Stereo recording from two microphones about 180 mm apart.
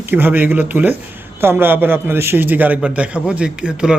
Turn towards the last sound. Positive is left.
turn(degrees=-5)  # may be behind; listen again after turning